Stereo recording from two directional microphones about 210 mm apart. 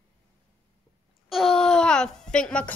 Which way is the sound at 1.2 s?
Centre (ahead or behind).